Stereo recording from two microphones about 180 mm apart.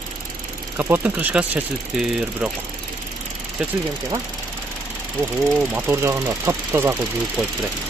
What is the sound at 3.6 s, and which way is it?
Speech, 5° right (ahead or behind).